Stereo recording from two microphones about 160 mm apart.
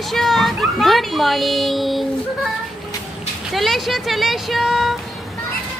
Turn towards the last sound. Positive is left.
turn(degrees=0)  # may be behind; listen again after turning